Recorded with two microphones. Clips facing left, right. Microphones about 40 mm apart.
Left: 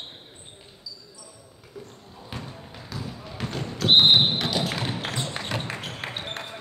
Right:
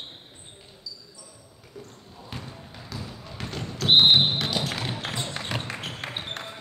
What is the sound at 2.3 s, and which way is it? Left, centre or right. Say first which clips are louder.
Basketball bounce: left 2 dB; centre.